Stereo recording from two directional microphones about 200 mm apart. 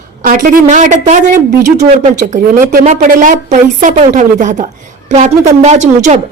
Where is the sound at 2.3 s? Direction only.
40° right (ahead or behind).